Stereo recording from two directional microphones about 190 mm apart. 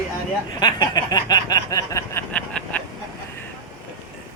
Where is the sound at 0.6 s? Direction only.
20° left (ahead or behind); by 2.8 s 5° left (ahead or behind).